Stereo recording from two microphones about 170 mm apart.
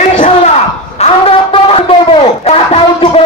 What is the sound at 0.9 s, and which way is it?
A man's voice, 35° left (ahead or behind).